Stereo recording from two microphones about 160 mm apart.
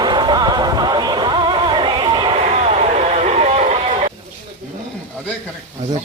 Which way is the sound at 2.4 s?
45° right (ahead or behind).